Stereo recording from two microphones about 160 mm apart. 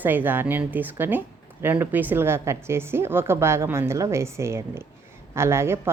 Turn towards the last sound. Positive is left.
turn(degrees=-15)  # may be behind; listen again after turning